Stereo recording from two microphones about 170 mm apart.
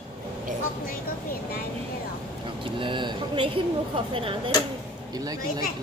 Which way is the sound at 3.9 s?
30° right (ahead or behind).